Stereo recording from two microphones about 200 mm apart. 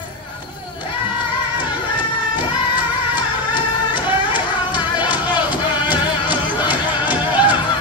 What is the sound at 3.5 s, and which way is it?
Music, 25° left (ahead or behind).